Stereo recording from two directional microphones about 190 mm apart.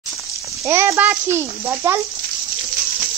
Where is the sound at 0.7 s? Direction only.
15° right (ahead or behind).